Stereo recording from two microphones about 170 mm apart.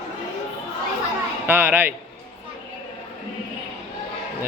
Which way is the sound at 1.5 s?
10° right (ahead or behind).